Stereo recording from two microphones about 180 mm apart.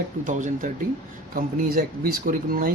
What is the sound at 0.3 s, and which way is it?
Speech, 45° right (ahead or behind).